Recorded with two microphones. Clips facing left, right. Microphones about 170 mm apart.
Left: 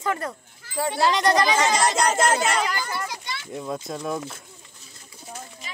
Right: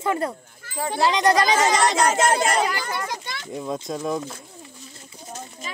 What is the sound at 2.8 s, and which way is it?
Speech, 50° right (ahead or behind).